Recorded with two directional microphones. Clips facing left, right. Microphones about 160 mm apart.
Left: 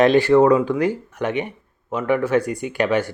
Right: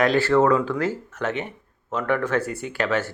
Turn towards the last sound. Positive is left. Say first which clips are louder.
# left 4 dB
turn(degrees=15)  # may be behind; listen again after turning